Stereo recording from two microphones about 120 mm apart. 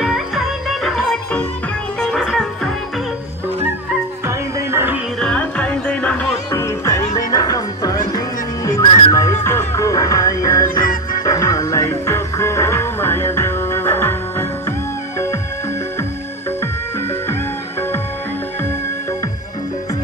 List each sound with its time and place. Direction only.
0.0 s music: 5° right (ahead or behind)
2.0 s music: 5° left (ahead or behind)
4.3 s music: 20° right (ahead or behind)
5.2 s music: 10° left (ahead or behind)
6.5 s music: 25° left (ahead or behind)